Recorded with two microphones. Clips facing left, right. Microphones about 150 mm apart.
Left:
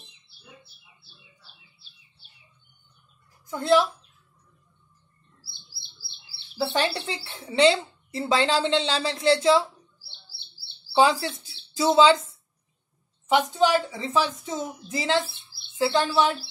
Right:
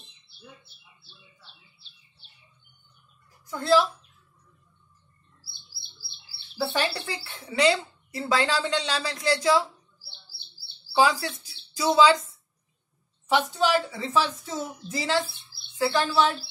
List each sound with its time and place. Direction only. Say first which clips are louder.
3.4 s speech: left 2 dB; 20° left (ahead or behind)
6.6 s speech: left 2 dB; 20° left (ahead or behind)
10.9 s speech: left 2 dB; 25° left (ahead or behind)